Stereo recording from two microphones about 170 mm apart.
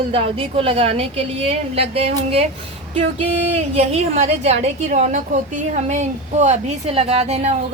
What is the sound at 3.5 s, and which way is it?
A woman's voice, 40° right (ahead or behind).